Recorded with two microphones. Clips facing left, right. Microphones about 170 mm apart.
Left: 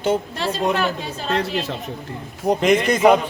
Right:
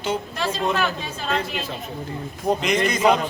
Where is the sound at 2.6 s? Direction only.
55° left (ahead or behind).